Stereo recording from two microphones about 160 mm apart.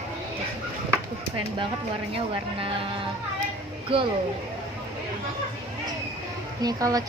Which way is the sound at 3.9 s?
35° right (ahead or behind).